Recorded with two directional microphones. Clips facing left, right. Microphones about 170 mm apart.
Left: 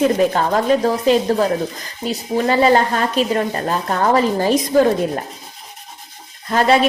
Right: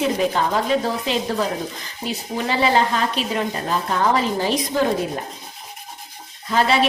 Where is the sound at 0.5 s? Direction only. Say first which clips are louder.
Left 5 dB; 45° left (ahead or behind).